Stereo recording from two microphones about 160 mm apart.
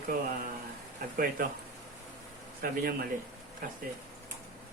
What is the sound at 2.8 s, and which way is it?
Speech, 75° right (ahead or behind).